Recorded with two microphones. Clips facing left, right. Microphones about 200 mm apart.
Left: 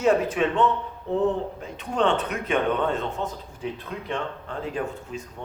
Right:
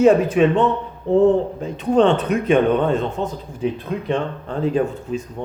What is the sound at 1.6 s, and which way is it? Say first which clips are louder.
Speech: right 8 dB; 30° right (ahead or behind).